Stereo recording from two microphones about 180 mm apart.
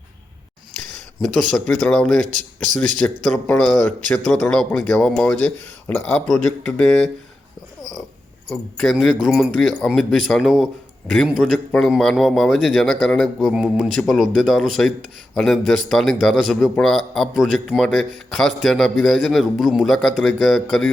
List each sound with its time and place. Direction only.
1.6 s a man's voice: 5° left (ahead or behind)
2.1 s speech: 45° right (ahead or behind)
3.3 s a man's voice: 15° left (ahead or behind)
8.8 s a man's voice: centre (ahead or behind)